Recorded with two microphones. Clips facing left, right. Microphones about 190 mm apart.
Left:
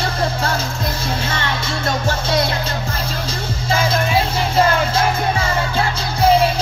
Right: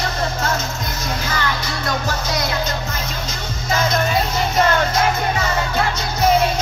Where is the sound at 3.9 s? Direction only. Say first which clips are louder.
Left 1 dB; 30° left (ahead or behind).